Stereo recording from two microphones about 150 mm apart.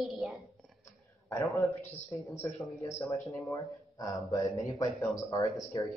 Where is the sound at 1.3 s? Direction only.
20° left (ahead or behind).